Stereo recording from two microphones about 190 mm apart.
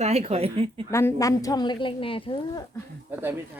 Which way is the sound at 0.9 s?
15° left (ahead or behind).